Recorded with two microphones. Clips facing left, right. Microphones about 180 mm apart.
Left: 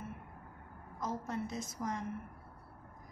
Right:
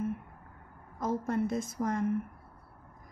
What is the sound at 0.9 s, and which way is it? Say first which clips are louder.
Speech: right 8 dB; 55° right (ahead or behind).